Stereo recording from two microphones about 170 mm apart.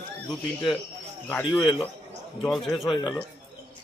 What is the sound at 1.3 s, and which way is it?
Speech, 10° left (ahead or behind).